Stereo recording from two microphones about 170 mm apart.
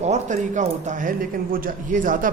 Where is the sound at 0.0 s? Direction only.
45° right (ahead or behind).